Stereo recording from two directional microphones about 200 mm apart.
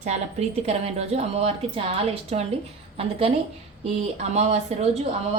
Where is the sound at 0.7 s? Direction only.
30° right (ahead or behind).